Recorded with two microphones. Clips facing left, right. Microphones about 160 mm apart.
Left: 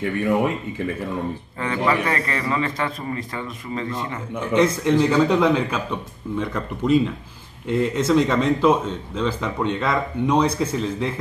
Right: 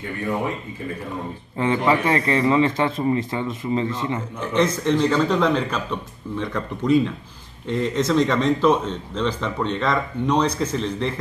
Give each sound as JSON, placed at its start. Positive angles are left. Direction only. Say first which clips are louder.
{"t": 1.6, "sound": "a man's voice", "louder": "right 3 dB", "side_deg": -20}
{"t": 4.6, "sound": "speech", "louder": "left 2 dB", "side_deg": 10}